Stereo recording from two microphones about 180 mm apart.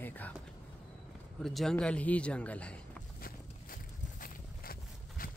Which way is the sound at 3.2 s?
50° left (ahead or behind).